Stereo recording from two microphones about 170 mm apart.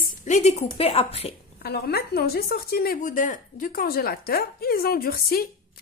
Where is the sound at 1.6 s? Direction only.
70° left (ahead or behind).